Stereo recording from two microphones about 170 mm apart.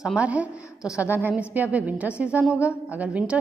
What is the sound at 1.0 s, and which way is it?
A woman's voice, 10° right (ahead or behind).